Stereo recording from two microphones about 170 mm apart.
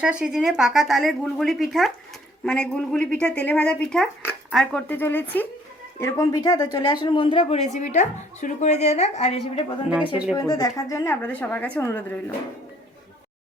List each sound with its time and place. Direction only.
0.0 s a woman's voice: 5° right (ahead or behind); by 9.6 s 40° left (ahead or behind)
10.3 s a woman's voice: 20° left (ahead or behind)